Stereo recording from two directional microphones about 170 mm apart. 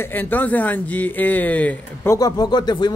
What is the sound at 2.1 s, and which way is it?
Speech, 20° left (ahead or behind).